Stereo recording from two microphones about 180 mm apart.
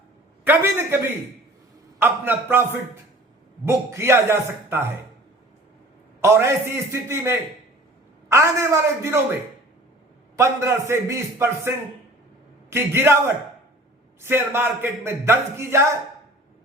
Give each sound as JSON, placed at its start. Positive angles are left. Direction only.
{"t": 0.4, "sound": "speech", "side_deg": -10}
{"t": 2.0, "sound": "speech", "side_deg": -10}
{"t": 3.7, "sound": "speech", "side_deg": -15}
{"t": 6.2, "sound": "speech", "side_deg": -15}
{"t": 10.3, "sound": "speech", "side_deg": -15}
{"t": 12.7, "sound": "speech", "side_deg": -15}